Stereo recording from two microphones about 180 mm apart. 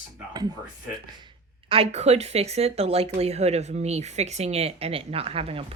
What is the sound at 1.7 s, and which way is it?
Speech, 35° right (ahead or behind).